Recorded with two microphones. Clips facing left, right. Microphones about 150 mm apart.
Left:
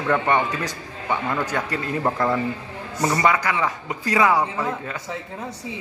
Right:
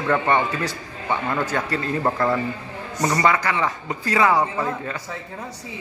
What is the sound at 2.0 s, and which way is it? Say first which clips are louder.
A man's voice: even; centre (ahead or behind).